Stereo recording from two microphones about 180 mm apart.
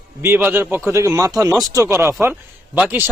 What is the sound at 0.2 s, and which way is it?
Speech, 10° right (ahead or behind).